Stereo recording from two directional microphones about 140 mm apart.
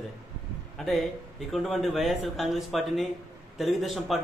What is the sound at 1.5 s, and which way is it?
Speech, centre (ahead or behind).